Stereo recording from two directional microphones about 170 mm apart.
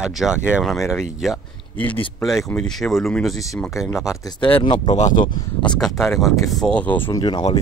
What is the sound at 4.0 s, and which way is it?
Speech, 30° left (ahead or behind).